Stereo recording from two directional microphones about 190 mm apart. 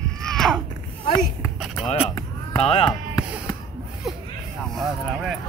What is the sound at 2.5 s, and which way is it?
Speech, 30° left (ahead or behind).